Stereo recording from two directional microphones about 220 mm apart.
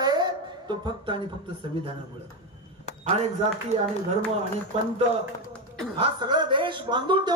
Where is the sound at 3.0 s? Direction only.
30° right (ahead or behind).